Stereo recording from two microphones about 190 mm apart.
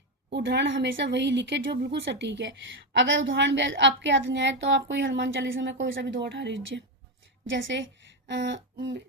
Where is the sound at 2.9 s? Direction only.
80° right.